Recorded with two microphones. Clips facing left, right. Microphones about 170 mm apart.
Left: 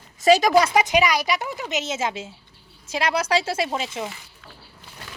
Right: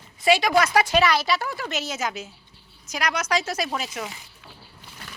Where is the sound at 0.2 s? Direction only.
40° left (ahead or behind).